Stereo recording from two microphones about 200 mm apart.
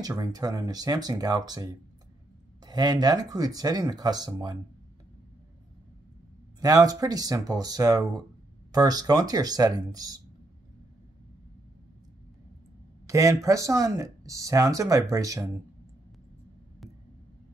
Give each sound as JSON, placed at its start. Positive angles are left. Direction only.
{"t": 0.0, "sound": "speech", "side_deg": -20}
{"t": 6.6, "sound": "speech", "side_deg": -20}
{"t": 13.0, "sound": "speech", "side_deg": -15}